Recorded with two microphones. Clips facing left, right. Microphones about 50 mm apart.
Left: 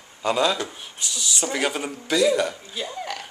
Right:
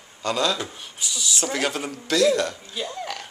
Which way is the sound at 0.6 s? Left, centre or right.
Centre.